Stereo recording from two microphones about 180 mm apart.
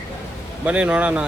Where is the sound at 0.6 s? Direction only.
5° right (ahead or behind).